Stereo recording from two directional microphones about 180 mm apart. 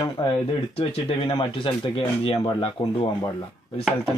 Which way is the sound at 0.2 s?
20° left (ahead or behind).